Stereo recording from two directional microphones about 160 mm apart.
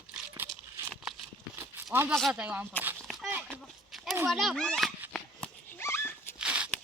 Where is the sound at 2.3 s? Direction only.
10° right (ahead or behind).